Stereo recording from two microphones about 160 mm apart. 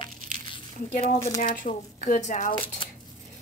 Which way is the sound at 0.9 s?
50° left (ahead or behind).